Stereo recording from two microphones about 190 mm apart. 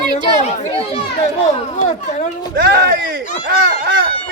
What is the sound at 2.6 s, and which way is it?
Speech, 50° right (ahead or behind).